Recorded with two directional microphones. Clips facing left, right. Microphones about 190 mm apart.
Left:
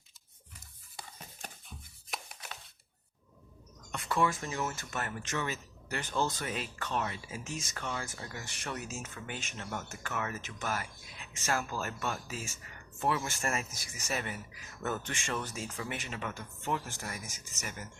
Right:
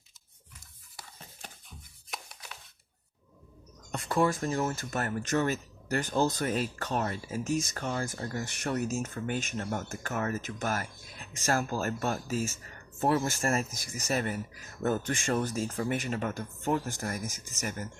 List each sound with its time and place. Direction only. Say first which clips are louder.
2.0 s music: even; centre (ahead or behind)
3.9 s speech: right 4 dB; 35° right (ahead or behind)